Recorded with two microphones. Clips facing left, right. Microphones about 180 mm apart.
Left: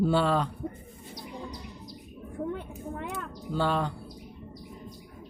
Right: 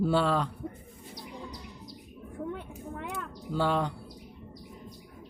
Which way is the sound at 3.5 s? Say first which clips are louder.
Even; 15° right (ahead or behind).